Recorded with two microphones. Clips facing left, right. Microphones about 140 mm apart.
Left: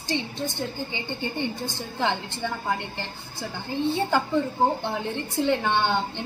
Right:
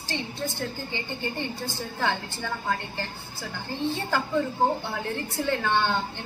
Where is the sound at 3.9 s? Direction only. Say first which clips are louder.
Left 4 dB; 20° left (ahead or behind).